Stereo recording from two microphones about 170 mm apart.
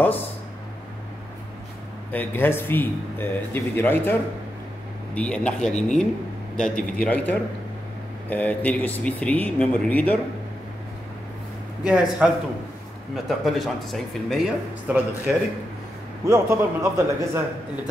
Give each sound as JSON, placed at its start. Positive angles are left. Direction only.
{"t": 2.1, "sound": "a man's voice", "side_deg": 10}
{"t": 11.8, "sound": "speech", "side_deg": -5}
{"t": 16.3, "sound": "a man's voice", "side_deg": -15}